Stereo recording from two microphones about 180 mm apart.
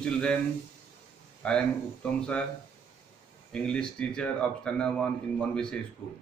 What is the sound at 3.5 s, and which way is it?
Speech, 5° left (ahead or behind).